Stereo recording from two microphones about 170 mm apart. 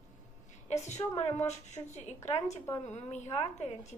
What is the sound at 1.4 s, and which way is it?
A woman's voice, 45° left (ahead or behind).